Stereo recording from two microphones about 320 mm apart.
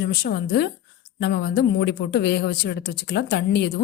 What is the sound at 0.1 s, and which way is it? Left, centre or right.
A woman's voice, left.